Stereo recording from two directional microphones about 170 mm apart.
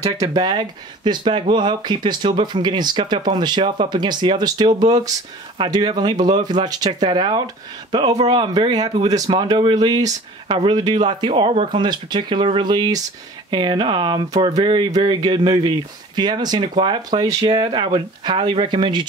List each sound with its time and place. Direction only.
0.4 s speech: 25° right (ahead or behind)